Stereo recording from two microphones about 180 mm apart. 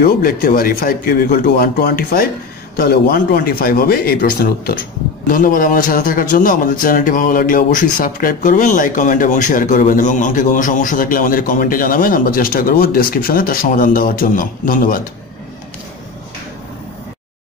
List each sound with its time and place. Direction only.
0.0 s a man's voice: 55° left (ahead or behind)